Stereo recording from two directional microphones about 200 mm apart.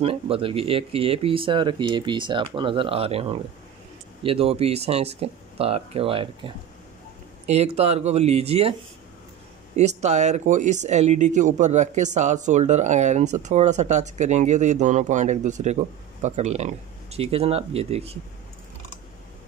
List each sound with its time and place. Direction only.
0.0 s speech: 30° right (ahead or behind)
9.8 s speech: 35° right (ahead or behind)